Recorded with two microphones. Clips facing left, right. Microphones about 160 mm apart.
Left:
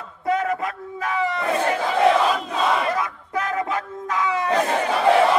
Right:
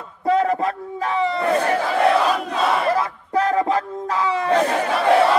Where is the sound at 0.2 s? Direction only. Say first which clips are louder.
Right 4 dB; 30° right (ahead or behind).